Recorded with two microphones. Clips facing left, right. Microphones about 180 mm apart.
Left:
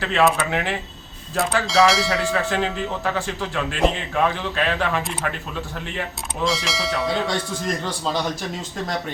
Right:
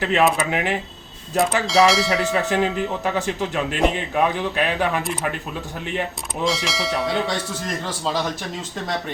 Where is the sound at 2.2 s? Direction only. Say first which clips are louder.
Right 2 dB; 20° right (ahead or behind).